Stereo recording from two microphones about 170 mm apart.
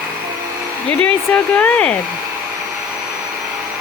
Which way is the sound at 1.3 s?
10° left (ahead or behind).